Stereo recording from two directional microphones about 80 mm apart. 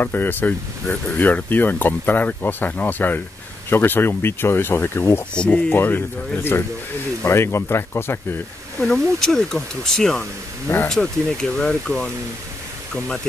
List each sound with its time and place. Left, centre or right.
0.0 s speech: left
5.3 s speech: centre
5.7 s speech: left
8.8 s speech: centre
10.7 s speech: centre